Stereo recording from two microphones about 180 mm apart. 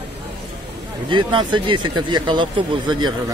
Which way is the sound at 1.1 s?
25° right (ahead or behind).